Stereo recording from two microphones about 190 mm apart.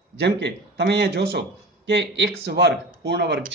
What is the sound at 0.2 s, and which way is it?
A man's voice, 60° right (ahead or behind).